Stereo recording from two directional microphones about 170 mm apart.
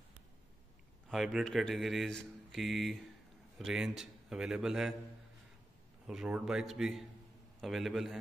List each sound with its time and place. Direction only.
1.0 s a man's voice: centre (ahead or behind)
6.0 s a man's voice: 5° right (ahead or behind)